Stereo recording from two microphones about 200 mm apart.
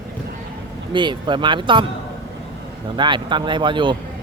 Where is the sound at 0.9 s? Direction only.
25° right (ahead or behind).